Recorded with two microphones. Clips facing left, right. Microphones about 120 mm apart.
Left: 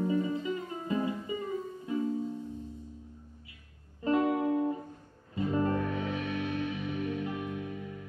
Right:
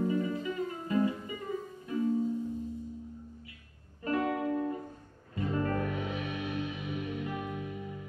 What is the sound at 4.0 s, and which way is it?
Music, 20° left (ahead or behind).